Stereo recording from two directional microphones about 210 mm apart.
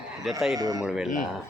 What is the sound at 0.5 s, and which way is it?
Speech, 20° right (ahead or behind).